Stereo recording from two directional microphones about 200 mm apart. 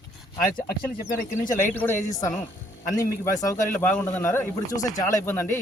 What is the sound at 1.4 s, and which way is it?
Speech, 10° left (ahead or behind).